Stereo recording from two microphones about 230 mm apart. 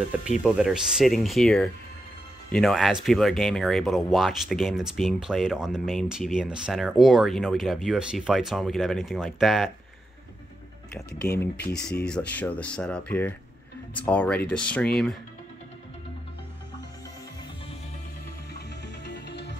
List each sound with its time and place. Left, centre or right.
0.4 s speech: centre
11.9 s speech: centre
19.0 s music: left